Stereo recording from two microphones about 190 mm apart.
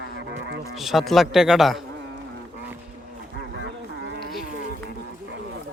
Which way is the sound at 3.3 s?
65° right (ahead or behind).